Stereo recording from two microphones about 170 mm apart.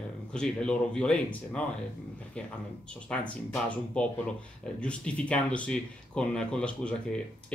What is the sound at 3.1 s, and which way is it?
Speech, 5° left (ahead or behind).